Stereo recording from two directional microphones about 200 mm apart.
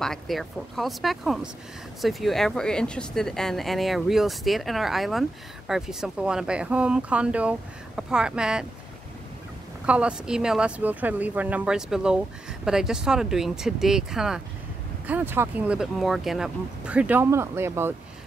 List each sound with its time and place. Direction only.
0.0 s speech: centre (ahead or behind)
9.8 s speech: 5° right (ahead or behind)